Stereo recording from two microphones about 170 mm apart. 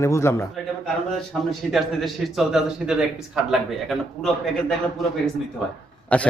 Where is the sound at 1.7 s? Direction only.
Centre (ahead or behind).